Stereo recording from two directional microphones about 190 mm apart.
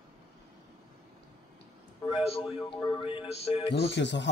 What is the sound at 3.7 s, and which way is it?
Speech, 65° left (ahead or behind).